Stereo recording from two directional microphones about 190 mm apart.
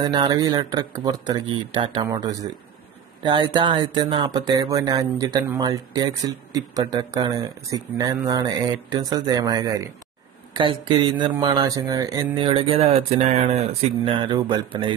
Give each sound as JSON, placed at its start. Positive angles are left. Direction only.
{"t": 0.0, "sound": "speech", "side_deg": -20}